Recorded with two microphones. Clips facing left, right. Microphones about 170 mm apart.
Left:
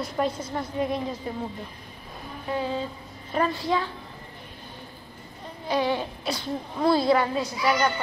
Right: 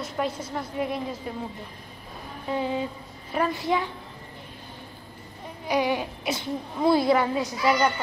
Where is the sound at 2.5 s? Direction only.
15° right (ahead or behind).